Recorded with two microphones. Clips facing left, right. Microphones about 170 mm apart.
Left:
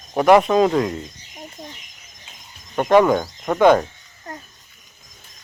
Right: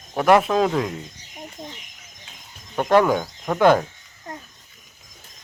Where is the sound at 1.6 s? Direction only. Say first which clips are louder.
Right 1 dB; 25° right (ahead or behind).